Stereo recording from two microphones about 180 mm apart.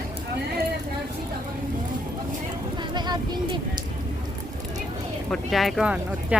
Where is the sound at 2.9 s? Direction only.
25° right (ahead or behind).